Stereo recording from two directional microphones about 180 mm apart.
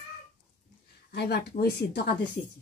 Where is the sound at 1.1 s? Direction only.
60° left (ahead or behind).